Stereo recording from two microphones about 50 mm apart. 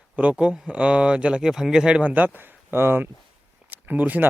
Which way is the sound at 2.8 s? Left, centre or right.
Right.